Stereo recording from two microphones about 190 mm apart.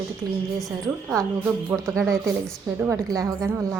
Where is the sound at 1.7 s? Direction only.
5° right (ahead or behind).